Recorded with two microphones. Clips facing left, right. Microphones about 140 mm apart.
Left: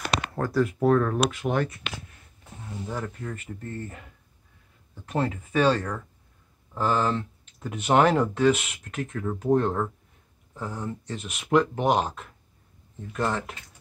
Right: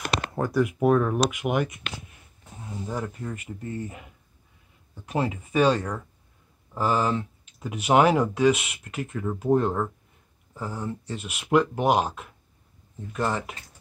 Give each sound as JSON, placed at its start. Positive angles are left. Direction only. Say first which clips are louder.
{"t": 0.3, "sound": "speech", "louder": "right 1 dB", "side_deg": -15}